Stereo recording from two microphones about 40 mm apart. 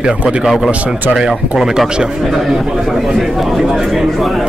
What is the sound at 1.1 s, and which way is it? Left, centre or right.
Speech, centre.